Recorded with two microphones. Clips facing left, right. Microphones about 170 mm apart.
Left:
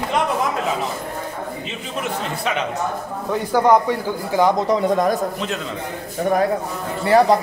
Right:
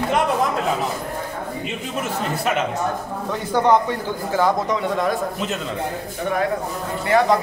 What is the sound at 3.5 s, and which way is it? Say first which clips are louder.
A man's voice: left 2 dB; 10° left (ahead or behind).